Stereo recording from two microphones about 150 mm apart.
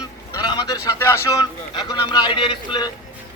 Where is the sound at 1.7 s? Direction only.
30° left (ahead or behind).